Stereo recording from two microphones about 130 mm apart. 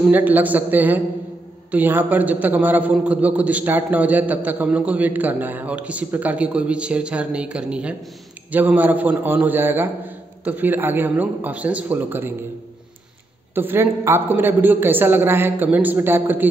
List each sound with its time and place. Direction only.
0.1 s a man's voice: 15° right (ahead or behind)
13.6 s a man's voice: 15° right (ahead or behind)